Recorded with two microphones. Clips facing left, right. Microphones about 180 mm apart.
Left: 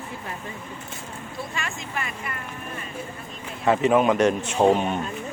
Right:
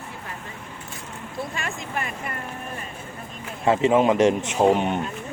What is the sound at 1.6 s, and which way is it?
Speech, 45° right (ahead or behind).